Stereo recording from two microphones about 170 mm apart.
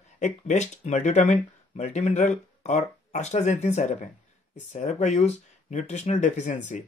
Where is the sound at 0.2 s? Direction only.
45° left (ahead or behind).